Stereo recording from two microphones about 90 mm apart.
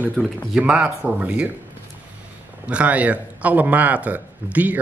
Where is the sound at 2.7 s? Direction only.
15° right (ahead or behind).